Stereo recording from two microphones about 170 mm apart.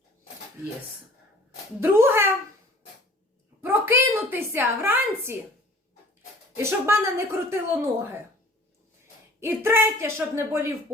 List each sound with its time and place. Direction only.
1.8 s speech: 15° right (ahead or behind)
3.6 s a woman's voice: 15° right (ahead or behind)
6.6 s speech: 15° right (ahead or behind)
9.4 s speech: 15° right (ahead or behind)